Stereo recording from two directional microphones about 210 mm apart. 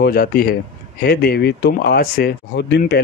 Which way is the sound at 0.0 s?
45° left (ahead or behind).